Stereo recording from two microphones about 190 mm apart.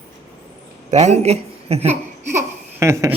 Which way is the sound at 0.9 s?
35° right (ahead or behind).